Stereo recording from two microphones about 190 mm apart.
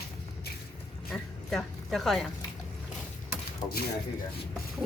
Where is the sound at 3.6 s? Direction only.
25° left (ahead or behind).